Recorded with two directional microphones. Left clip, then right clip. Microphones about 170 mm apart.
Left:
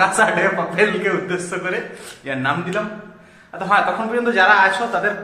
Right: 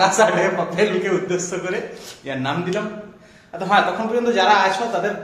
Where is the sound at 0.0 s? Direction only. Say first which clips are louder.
Even; centre (ahead or behind).